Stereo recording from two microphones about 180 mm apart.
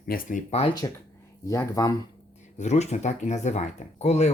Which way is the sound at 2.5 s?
40° left (ahead or behind).